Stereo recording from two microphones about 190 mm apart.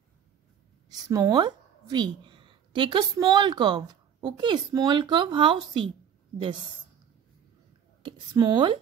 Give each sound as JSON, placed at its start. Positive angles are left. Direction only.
{"t": 0.8, "sound": "a woman's voice", "side_deg": -20}
{"t": 8.0, "sound": "speech", "side_deg": -20}